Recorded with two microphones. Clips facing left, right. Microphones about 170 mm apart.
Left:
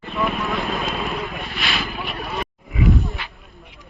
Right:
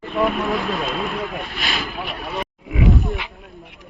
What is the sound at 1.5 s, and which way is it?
Vehicle, 45° right (ahead or behind).